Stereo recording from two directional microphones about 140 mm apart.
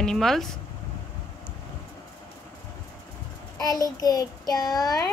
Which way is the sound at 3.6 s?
25° left (ahead or behind).